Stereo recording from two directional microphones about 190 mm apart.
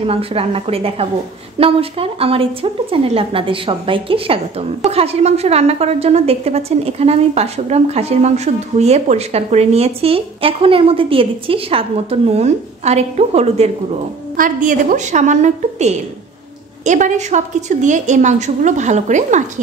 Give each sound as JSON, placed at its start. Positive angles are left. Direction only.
{"t": 0.0, "sound": "a woman's voice", "side_deg": -30}
{"t": 14.3, "sound": "a woman's voice", "side_deg": -45}